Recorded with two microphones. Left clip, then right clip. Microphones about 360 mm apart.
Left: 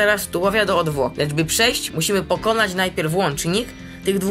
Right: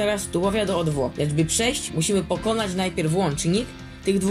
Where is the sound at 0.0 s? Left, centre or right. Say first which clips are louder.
Left 5 dB; left.